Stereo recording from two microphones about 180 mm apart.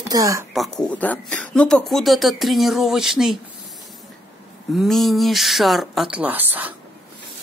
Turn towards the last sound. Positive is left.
turn(degrees=-10)  # may be behind; listen again after turning